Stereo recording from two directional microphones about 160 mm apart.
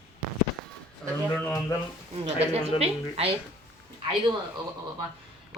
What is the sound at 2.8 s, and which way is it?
Speech, 35° right (ahead or behind).